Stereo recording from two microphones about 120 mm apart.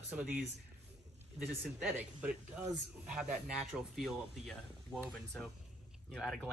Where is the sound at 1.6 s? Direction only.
Centre (ahead or behind).